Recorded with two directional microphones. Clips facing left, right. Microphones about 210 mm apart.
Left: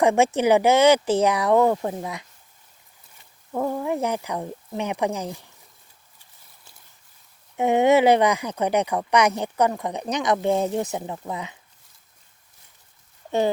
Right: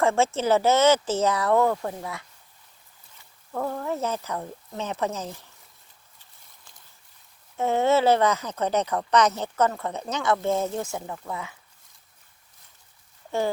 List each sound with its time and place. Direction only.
0.0 s speech: 15° left (ahead or behind)
3.5 s speech: 15° left (ahead or behind)
7.5 s speech: 15° left (ahead or behind)